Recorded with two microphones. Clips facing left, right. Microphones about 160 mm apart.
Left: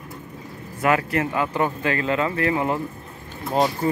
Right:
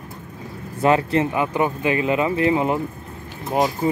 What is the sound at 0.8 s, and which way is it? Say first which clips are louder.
Speech: right 3 dB; 25° right (ahead or behind).